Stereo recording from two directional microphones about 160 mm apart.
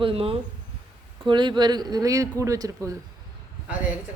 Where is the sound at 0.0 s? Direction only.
35° right (ahead or behind); by 2.9 s 20° right (ahead or behind).